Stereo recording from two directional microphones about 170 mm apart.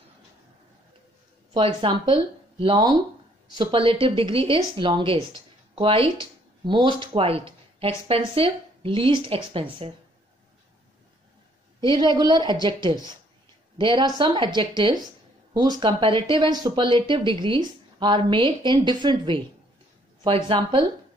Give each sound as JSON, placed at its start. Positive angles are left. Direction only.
{"t": 1.5, "sound": "speech", "side_deg": -30}
{"t": 11.8, "sound": "speech", "side_deg": -25}
{"t": 20.4, "sound": "speech", "side_deg": -30}